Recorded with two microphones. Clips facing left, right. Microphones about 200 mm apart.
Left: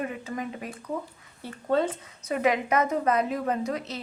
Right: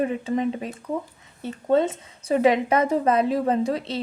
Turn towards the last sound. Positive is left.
turn(degrees=-30)  # may be behind; listen again after turning